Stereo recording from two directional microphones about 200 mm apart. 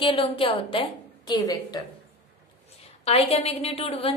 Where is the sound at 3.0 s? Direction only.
30° left (ahead or behind).